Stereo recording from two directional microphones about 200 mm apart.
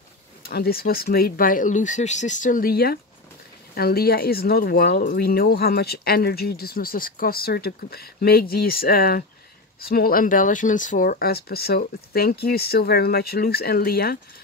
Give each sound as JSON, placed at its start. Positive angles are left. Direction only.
{"t": 0.4, "sound": "speech", "side_deg": 50}